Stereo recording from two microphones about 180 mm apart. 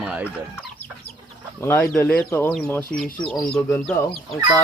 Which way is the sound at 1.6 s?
15° left (ahead or behind).